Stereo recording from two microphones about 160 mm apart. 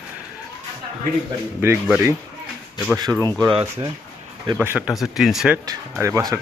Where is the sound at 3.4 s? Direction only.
30° right (ahead or behind).